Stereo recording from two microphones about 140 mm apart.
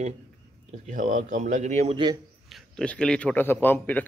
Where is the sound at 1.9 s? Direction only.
30° right (ahead or behind).